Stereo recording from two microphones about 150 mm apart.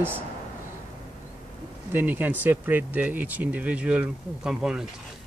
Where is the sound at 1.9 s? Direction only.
10° right (ahead or behind).